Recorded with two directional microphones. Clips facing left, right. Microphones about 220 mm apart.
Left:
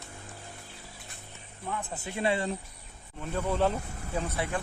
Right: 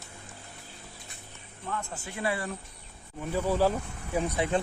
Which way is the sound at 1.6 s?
15° left (ahead or behind).